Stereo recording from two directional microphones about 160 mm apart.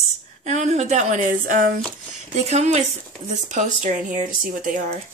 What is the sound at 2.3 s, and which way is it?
Speech, 45° right (ahead or behind).